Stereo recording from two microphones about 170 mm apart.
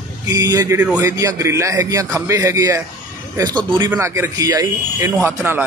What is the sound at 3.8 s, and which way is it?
A man's voice, 15° right (ahead or behind).